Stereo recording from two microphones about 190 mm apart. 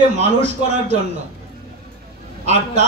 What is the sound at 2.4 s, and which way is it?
Speech, 35° right (ahead or behind).